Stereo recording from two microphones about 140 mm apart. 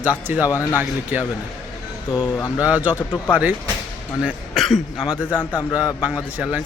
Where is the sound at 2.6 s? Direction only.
10° right (ahead or behind).